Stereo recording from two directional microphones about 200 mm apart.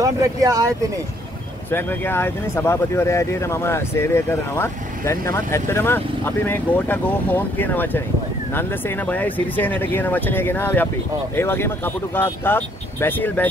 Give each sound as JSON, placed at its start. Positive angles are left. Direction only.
{"t": 0.0, "sound": "speech", "side_deg": -15}
{"t": 1.7, "sound": "speech", "side_deg": 10}